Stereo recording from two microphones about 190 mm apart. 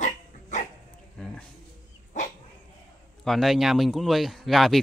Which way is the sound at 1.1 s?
5° left (ahead or behind).